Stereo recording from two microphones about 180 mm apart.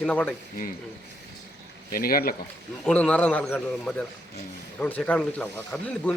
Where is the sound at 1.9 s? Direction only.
55° left (ahead or behind).